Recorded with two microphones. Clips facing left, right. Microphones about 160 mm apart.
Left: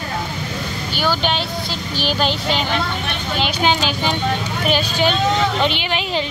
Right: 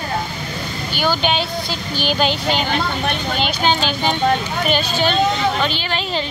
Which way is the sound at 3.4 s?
10° left (ahead or behind).